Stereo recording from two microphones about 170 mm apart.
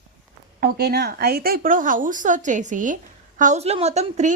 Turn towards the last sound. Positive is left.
turn(degrees=-40)  # may be behind; listen again after turning